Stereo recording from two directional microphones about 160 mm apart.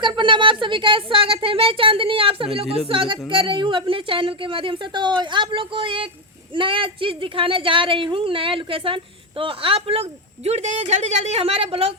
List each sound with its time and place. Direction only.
0.0 s speech: 30° right (ahead or behind)